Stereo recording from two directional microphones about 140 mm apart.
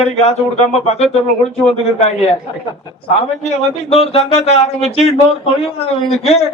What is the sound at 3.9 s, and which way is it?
A man's voice, 45° left (ahead or behind).